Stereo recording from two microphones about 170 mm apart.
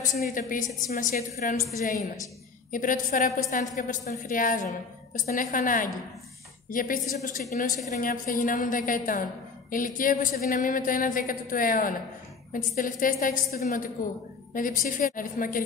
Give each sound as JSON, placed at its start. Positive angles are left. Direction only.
{"t": 0.0, "sound": "a woman's voice", "side_deg": 50}
{"t": 2.7, "sound": "a woman's voice", "side_deg": 50}